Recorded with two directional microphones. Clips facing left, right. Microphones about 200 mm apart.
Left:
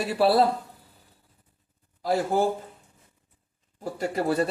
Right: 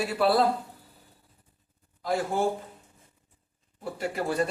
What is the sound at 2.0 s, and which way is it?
Speech, 35° left (ahead or behind).